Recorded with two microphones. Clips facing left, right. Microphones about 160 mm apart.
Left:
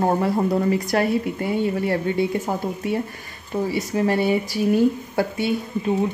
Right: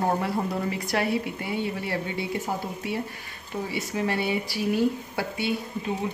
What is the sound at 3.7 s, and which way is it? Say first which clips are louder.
Speech: left 5 dB; 40° left (ahead or behind).